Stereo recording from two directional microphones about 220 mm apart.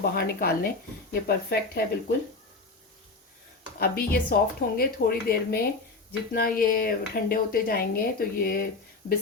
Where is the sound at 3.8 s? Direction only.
45° left (ahead or behind).